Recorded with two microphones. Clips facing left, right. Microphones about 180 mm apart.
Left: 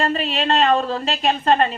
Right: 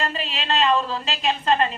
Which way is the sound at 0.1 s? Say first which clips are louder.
Left 6 dB; 45° left (ahead or behind).